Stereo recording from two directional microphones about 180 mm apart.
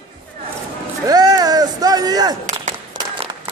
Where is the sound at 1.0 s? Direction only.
20° right (ahead or behind).